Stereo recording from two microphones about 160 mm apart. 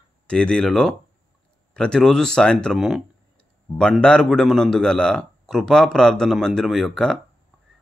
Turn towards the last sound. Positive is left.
turn(degrees=5)  # may be behind; listen again after turning